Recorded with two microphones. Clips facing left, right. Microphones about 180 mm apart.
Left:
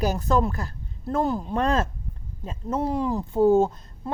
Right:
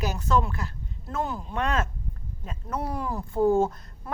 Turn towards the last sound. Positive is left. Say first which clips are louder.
# left 2 dB
turn(degrees=20)  # may be behind; listen again after turning